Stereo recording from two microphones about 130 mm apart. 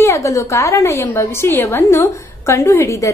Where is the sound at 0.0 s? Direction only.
25° left (ahead or behind).